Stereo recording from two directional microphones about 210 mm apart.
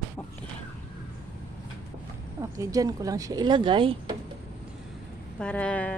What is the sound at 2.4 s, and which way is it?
Speech, 15° right (ahead or behind).